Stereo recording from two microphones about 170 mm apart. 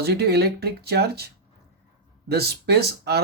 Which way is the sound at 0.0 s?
70° right (ahead or behind).